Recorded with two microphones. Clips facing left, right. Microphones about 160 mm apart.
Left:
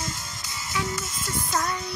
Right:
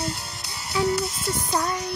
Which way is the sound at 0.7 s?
35° right (ahead or behind).